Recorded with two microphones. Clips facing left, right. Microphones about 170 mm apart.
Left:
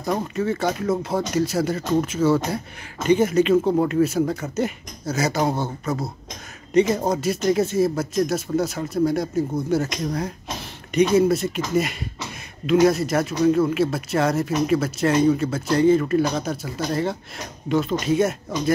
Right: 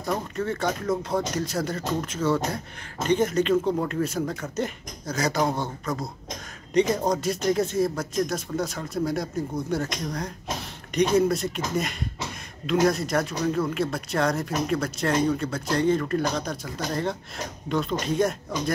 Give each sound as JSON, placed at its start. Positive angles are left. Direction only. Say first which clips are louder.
{"t": 0.0, "sound": "speech", "louder": "left 4 dB", "side_deg": 5}